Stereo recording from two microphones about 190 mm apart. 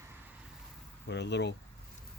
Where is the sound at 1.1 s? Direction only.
65° left (ahead or behind).